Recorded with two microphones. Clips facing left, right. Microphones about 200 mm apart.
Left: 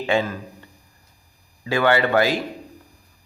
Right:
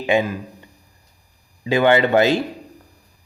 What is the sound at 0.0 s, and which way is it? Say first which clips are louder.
Speech: right 3 dB; 15° right (ahead or behind).